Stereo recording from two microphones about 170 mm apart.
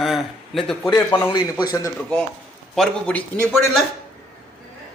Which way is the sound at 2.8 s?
5° left (ahead or behind).